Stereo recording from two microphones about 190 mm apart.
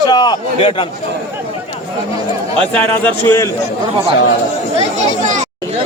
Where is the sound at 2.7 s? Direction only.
10° left (ahead or behind).